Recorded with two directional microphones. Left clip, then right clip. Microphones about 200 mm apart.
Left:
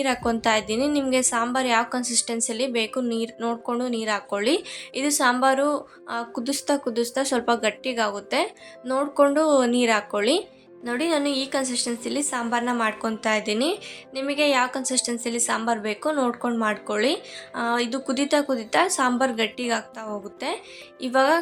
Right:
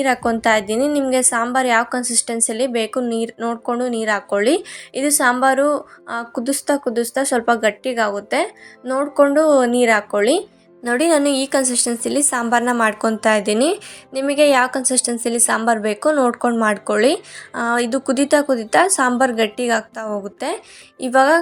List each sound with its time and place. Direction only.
0.0 s a woman's voice: 20° right (ahead or behind)
10.8 s a woman's voice: 35° right (ahead or behind)